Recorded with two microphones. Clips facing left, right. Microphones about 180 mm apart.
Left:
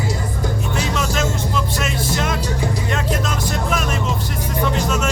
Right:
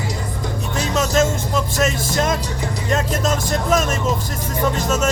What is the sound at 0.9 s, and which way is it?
Music, 40° right (ahead or behind).